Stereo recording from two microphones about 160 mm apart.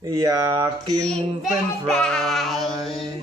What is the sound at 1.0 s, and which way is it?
Child singing, 5° left (ahead or behind).